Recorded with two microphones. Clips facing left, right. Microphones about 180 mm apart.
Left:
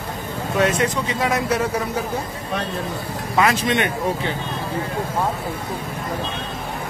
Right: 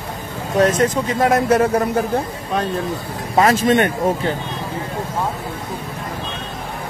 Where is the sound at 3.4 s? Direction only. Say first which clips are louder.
Right 5 dB; 45° right (ahead or behind).